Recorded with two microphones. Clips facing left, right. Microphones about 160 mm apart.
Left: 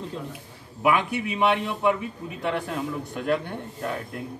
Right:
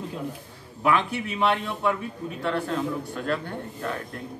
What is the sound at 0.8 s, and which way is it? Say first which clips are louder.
A man's voice: left 1 dB; 15° left (ahead or behind).